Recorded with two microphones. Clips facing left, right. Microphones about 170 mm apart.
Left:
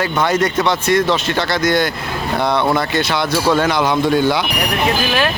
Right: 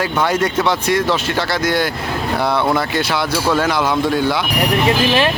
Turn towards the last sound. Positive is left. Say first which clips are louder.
# left 2 dB
turn(degrees=0)  # may be behind; listen again after turning